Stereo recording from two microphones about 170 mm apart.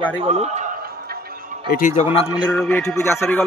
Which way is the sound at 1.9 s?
40° left (ahead or behind).